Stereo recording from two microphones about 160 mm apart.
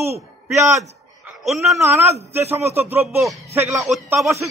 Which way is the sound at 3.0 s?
Centre (ahead or behind).